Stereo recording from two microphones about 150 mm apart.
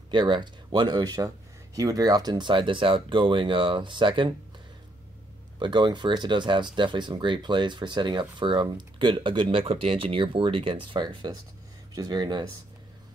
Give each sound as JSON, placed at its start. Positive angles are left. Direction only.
{"t": 0.1, "sound": "speech", "side_deg": -30}
{"t": 5.6, "sound": "speech", "side_deg": -30}